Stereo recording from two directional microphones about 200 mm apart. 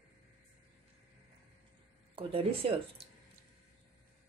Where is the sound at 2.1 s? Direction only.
25° right (ahead or behind).